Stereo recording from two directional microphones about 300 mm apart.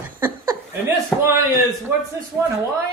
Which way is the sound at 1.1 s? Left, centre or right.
Centre.